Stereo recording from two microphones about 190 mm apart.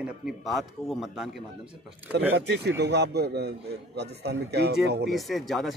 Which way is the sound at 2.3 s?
60° right (ahead or behind).